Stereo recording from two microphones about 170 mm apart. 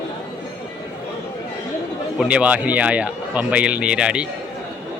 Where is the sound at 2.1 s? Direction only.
5° right (ahead or behind).